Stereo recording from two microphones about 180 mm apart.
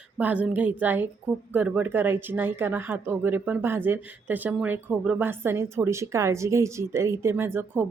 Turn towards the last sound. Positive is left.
turn(degrees=-15)  # may be behind; listen again after turning